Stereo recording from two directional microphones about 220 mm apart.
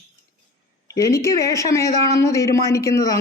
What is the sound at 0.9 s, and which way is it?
A man's voice, 15° left (ahead or behind).